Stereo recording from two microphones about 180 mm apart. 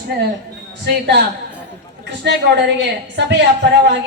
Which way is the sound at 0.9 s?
70° right (ahead or behind).